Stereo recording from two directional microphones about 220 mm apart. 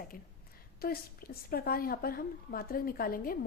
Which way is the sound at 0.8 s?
45° left (ahead or behind).